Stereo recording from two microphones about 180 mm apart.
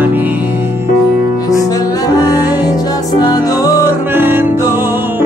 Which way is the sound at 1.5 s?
20° left (ahead or behind).